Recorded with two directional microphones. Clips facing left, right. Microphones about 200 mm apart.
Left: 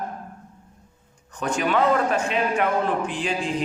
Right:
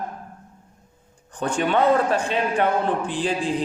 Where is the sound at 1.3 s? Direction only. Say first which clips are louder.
Right 1 dB; 30° right (ahead or behind).